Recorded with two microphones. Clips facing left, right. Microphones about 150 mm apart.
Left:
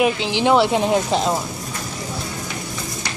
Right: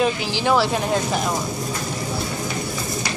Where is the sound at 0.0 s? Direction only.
20° left (ahead or behind).